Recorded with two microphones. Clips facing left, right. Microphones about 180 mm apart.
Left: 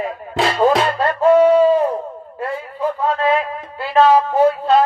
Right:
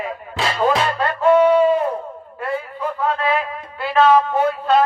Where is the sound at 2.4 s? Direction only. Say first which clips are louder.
Left 2 dB; 35° left (ahead or behind).